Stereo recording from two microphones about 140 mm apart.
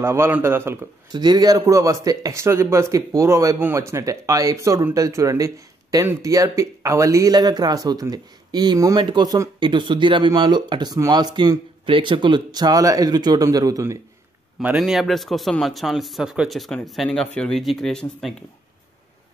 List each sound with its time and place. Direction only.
0.0 s a man's voice: 15° right (ahead or behind)
1.1 s speech: 30° right (ahead or behind)
14.8 s speech: centre (ahead or behind)